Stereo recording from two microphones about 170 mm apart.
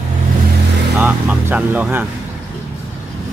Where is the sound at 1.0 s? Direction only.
10° right (ahead or behind).